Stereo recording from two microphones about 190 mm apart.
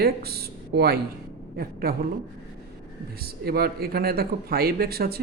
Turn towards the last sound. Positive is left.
turn(degrees=-55)  # may be behind; listen again after turning